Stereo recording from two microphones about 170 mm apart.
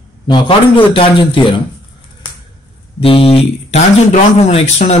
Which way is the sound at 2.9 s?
35° left (ahead or behind).